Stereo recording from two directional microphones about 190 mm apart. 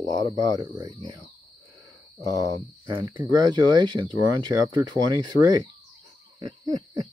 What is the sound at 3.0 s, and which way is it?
Speech, 20° right (ahead or behind).